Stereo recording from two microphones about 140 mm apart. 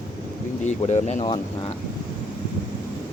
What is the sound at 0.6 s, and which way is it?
Speech, 55° left (ahead or behind).